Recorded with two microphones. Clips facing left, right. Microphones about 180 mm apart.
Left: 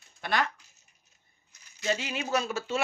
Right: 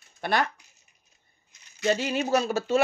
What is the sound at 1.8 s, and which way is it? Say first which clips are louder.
Speech: right 6 dB; 45° right (ahead or behind).